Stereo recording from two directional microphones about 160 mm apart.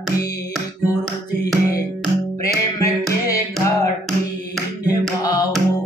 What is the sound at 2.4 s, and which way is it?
Music, 20° left (ahead or behind).